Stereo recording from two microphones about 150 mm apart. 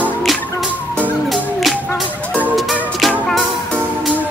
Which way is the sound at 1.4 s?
5° left (ahead or behind).